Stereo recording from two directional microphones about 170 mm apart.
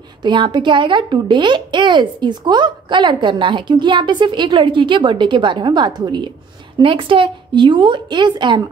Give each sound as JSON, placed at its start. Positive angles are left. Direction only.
{"t": 0.2, "sound": "a woman's voice", "side_deg": -25}